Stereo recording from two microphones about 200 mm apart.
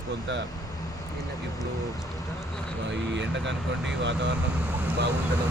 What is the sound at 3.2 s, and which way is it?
Speech, 65° right (ahead or behind).